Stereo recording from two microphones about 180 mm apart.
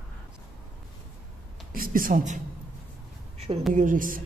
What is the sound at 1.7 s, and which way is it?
Speech, 50° right (ahead or behind).